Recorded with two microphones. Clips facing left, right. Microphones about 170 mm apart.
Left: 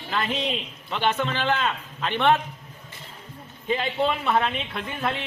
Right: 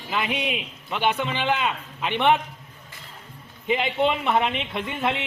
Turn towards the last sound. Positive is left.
turn(degrees=-20)  # may be behind; listen again after turning